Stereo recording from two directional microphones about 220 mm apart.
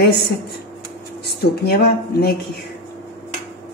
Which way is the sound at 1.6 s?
45° left (ahead or behind).